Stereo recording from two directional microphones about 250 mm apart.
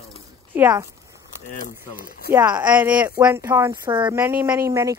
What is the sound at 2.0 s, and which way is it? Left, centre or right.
Speech, left.